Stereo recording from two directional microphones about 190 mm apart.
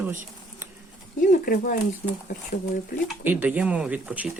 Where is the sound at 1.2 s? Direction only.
50° left (ahead or behind).